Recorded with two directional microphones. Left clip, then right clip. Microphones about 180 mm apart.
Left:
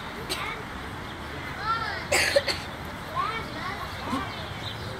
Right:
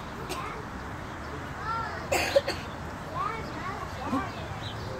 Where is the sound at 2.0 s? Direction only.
55° right (ahead or behind).